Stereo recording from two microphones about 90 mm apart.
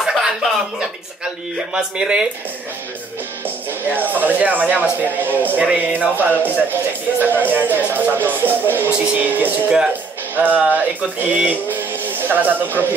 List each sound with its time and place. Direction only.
0.0 s music: centre (ahead or behind)
1.7 s speech: 10° right (ahead or behind)
3.4 s speech: 20° right (ahead or behind)